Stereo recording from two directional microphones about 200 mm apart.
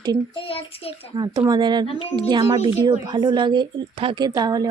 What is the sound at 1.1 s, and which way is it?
Speech, 20° right (ahead or behind).